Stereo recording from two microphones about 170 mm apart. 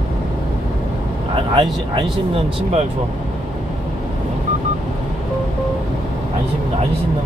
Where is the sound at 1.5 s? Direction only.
30° right (ahead or behind).